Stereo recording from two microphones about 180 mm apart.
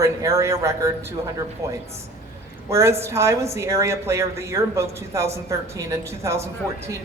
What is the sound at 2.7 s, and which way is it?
Speech, 15° right (ahead or behind).